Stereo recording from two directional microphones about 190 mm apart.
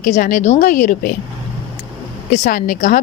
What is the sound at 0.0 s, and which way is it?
A woman's voice, 45° left (ahead or behind).